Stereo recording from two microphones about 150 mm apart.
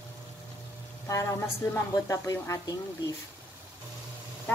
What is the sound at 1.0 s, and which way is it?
A woman's voice, 20° left (ahead or behind).